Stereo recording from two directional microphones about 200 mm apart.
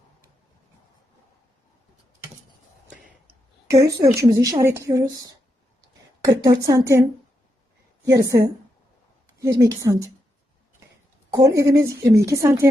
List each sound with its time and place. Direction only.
3.7 s a woman's voice: 15° right (ahead or behind)
8.0 s a woman's voice: 15° right (ahead or behind)
11.3 s a woman's voice: 15° right (ahead or behind)